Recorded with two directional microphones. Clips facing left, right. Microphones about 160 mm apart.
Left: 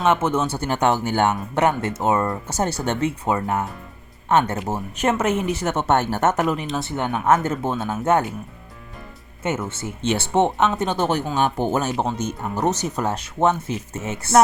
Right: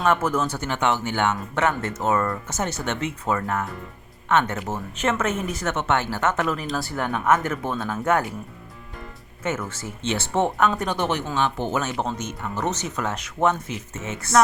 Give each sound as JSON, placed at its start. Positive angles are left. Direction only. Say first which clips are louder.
{"t": 0.1, "sound": "speech", "louder": "left 3 dB", "side_deg": 25}
{"t": 6.4, "sound": "speech", "louder": "left 3 dB", "side_deg": 25}
{"t": 9.4, "sound": "speech", "louder": "left 3 dB", "side_deg": 25}